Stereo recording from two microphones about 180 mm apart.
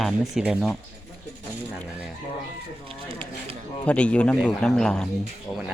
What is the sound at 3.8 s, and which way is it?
Speech, 5° left (ahead or behind).